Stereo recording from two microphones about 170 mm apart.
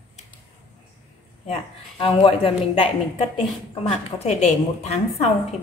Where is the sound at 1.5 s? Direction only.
30° left (ahead or behind).